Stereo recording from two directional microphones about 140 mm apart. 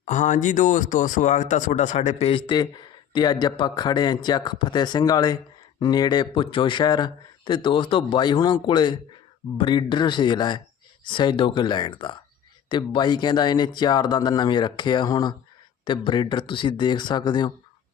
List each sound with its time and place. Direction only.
0.0 s speech: 65° left (ahead or behind); by 2.6 s 40° left (ahead or behind)
2.6 s a man's voice: 30° left (ahead or behind)